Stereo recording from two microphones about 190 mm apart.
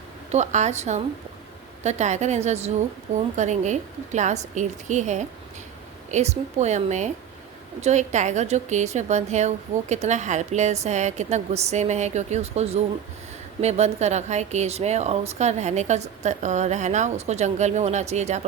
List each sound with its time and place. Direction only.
0.3 s a woman's voice: 35° right (ahead or behind)